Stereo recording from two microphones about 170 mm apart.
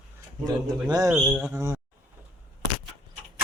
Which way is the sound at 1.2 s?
5° right (ahead or behind).